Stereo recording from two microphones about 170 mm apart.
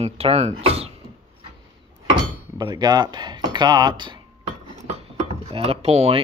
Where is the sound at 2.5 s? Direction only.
25° right (ahead or behind).